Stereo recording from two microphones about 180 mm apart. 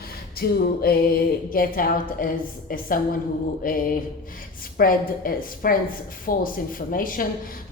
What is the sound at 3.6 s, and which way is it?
A woman's voice, 50° left (ahead or behind).